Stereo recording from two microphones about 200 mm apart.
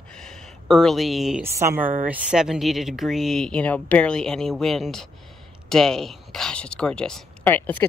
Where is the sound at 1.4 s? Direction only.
10° right (ahead or behind).